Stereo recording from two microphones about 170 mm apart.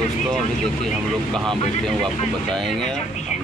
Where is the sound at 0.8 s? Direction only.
5° left (ahead or behind).